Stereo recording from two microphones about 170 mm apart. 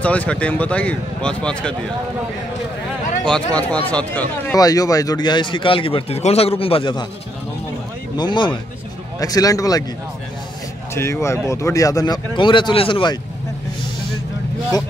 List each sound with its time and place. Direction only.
0.0 s speech: 10° left (ahead or behind)
3.3 s speech: 5° left (ahead or behind)
4.6 s speech: 20° left (ahead or behind)
8.2 s speech: 25° left (ahead or behind)
11.0 s speech: 15° left (ahead or behind)